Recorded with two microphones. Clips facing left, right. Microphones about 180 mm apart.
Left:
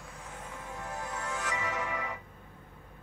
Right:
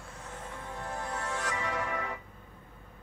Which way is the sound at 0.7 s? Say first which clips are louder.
Right 2 dB; 30° right (ahead or behind).